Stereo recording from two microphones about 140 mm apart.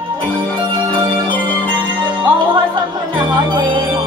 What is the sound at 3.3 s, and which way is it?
Music, 35° right (ahead or behind).